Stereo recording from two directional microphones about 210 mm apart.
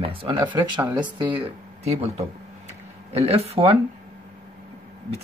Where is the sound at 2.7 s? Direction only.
30° right (ahead or behind).